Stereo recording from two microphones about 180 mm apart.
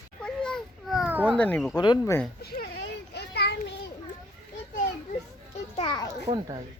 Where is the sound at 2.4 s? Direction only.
60° left (ahead or behind).